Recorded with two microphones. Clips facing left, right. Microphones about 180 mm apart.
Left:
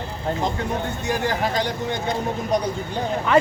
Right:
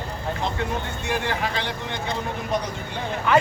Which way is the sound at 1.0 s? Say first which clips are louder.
Left 2 dB; 40° left (ahead or behind).